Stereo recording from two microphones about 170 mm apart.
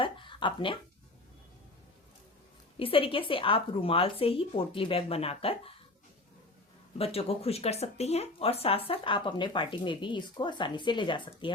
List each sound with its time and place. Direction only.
0.0 s speech: 30° left (ahead or behind)
2.7 s a woman's voice: 30° left (ahead or behind)
7.0 s speech: 35° left (ahead or behind)